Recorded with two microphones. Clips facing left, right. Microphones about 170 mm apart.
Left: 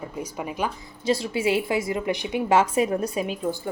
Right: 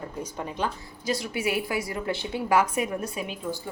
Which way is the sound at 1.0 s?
30° left (ahead or behind).